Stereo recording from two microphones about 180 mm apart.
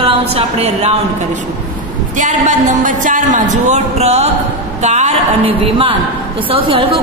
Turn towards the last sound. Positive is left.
turn(degrees=-30)  # may be behind; listen again after turning